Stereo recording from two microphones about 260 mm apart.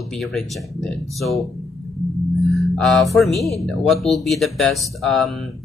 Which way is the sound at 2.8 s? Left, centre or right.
Centre.